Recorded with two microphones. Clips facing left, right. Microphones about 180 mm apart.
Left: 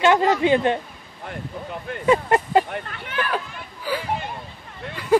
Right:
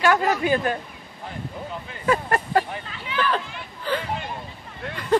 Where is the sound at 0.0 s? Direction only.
25° left (ahead or behind).